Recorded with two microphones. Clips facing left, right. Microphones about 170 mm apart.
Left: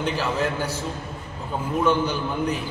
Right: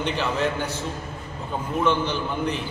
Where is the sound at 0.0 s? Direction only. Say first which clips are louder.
Even; 5° left (ahead or behind).